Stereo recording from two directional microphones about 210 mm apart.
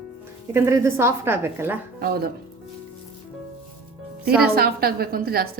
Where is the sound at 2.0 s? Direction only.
50° right (ahead or behind).